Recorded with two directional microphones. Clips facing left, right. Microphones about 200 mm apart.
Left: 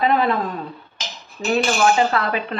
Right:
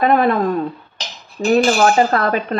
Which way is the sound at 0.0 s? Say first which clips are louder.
Right 4 dB; 50° right (ahead or behind).